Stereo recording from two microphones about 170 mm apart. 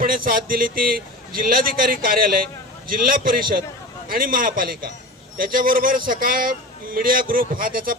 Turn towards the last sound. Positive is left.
turn(degrees=-55)  # may be behind; listen again after turning